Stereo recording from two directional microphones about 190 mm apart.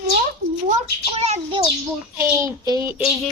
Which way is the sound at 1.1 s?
35° right (ahead or behind).